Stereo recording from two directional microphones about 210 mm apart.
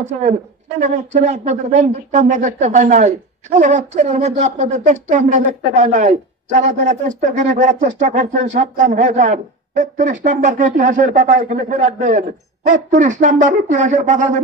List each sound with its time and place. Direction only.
0.0 s speech: 35° right (ahead or behind)